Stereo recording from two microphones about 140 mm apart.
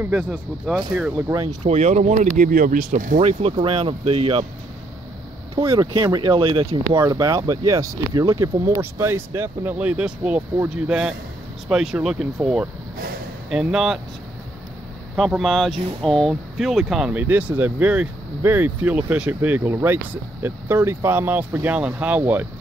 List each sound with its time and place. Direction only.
0.0 s speech: 15° right (ahead or behind)
1.6 s speech: 55° right (ahead or behind)
2.3 s speech: 75° right (ahead or behind)
3.2 s speech: 45° right (ahead or behind)
5.6 s speech: 35° right (ahead or behind)
7.0 s speech: 25° right (ahead or behind); by 13.9 s 5° right (ahead or behind)
15.1 s speech: centre (ahead or behind)